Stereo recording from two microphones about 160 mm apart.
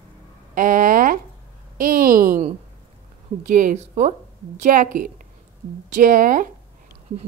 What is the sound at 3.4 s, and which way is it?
A woman's voice, 55° right (ahead or behind).